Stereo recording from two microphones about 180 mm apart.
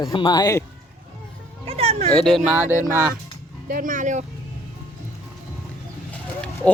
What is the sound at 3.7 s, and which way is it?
Speech, 50° right (ahead or behind).